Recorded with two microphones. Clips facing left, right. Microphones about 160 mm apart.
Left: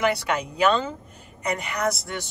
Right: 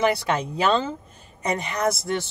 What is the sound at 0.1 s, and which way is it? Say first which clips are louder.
A man's voice: right 2 dB; 30° right (ahead or behind).